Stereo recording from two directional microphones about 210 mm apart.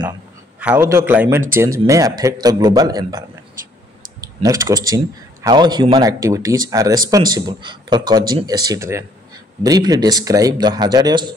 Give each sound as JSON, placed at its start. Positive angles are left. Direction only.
{"t": 0.6, "sound": "speech", "side_deg": -10}